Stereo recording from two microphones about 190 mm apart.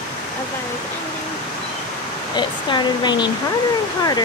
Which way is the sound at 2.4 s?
25° left (ahead or behind).